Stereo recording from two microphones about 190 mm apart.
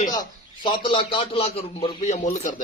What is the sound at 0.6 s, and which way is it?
Speech, 25° left (ahead or behind).